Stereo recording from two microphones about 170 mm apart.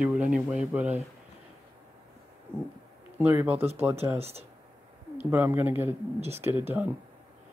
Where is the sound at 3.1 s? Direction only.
10° right (ahead or behind).